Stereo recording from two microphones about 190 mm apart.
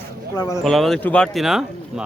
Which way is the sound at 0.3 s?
15° left (ahead or behind).